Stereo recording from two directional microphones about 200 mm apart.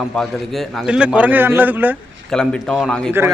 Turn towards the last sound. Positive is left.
turn(degrees=0)  # may be behind; listen again after turning